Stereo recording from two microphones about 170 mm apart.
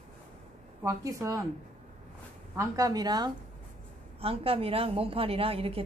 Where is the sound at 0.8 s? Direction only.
20° right (ahead or behind).